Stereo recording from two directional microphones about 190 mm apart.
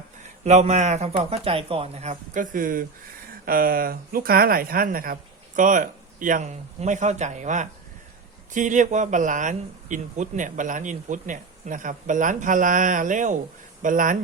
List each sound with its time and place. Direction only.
0.4 s speech: 35° right (ahead or behind)